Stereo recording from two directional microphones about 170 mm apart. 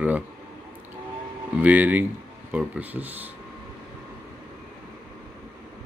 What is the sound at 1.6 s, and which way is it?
Speech, 10° right (ahead or behind).